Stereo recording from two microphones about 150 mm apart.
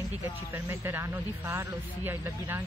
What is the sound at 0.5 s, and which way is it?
A man's voice, 15° right (ahead or behind).